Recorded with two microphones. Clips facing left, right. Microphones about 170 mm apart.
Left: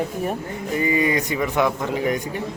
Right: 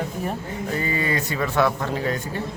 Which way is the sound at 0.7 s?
15° left (ahead or behind).